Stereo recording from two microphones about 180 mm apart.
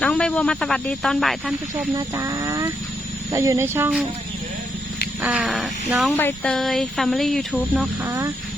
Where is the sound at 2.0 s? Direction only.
15° right (ahead or behind).